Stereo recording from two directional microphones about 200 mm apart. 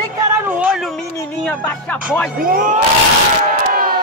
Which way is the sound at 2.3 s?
45° right (ahead or behind).